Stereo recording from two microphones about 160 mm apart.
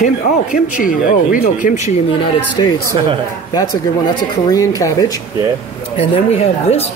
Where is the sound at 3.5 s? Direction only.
25° left (ahead or behind).